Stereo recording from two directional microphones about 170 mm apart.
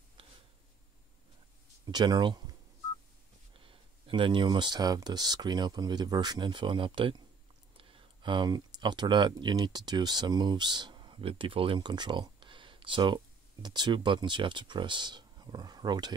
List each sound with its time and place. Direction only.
0.2 s a sound: 30° right (ahead or behind)
1.9 s speech: 25° right (ahead or behind)
3.5 s speech: 30° right (ahead or behind)